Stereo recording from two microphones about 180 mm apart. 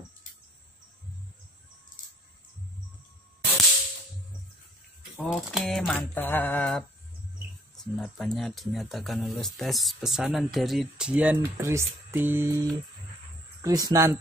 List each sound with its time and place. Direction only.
5.1 s speech: centre (ahead or behind)
13.6 s speech: 20° right (ahead or behind)